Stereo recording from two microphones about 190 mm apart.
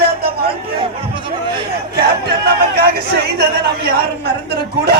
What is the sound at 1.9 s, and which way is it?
Music, 55° right (ahead or behind).